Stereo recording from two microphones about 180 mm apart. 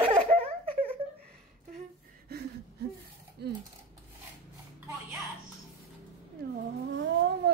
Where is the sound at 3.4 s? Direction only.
65° right (ahead or behind).